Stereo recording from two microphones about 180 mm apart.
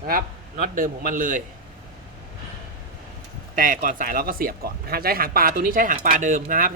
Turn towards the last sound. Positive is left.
turn(degrees=-50)  # may be behind; listen again after turning